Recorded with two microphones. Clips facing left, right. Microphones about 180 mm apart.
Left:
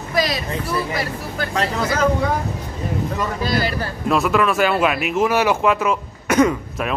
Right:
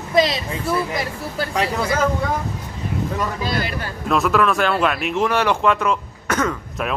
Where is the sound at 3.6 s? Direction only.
35° left (ahead or behind).